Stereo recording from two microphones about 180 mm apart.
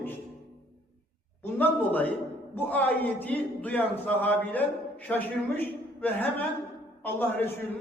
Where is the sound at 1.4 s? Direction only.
10° left (ahead or behind).